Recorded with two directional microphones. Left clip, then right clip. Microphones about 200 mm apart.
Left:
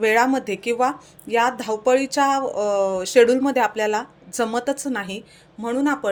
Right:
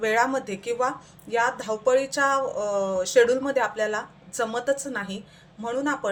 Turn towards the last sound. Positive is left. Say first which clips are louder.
# left 4 dB
turn(degrees=40)  # may be behind; listen again after turning